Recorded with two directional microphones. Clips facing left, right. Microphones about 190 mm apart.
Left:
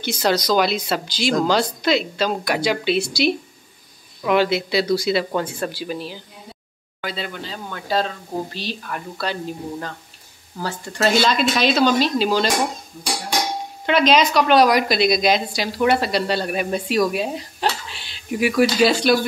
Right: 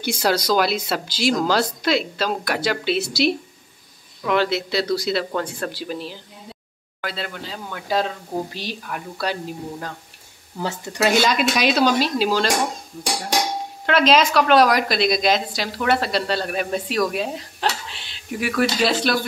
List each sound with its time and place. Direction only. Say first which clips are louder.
0.0 s a woman's voice: left 1 dB; 10° right (ahead or behind)
11.0 s speech: even; 10° right (ahead or behind)
13.8 s a woman's voice: left 1 dB; centre (ahead or behind)